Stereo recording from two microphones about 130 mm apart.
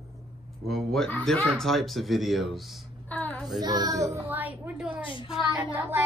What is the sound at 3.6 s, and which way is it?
A child's voice, 30° right (ahead or behind).